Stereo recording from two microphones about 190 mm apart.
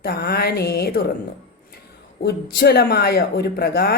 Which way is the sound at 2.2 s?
60° left (ahead or behind).